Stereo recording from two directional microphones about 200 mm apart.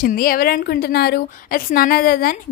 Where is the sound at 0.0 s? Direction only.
45° left (ahead or behind).